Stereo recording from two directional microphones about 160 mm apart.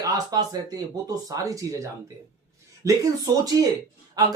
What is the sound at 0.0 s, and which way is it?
Speech, 25° right (ahead or behind).